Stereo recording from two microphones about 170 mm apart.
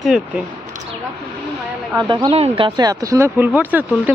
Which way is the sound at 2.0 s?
25° right (ahead or behind).